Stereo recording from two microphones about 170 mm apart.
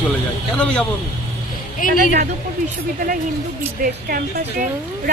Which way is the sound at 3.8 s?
60° right (ahead or behind).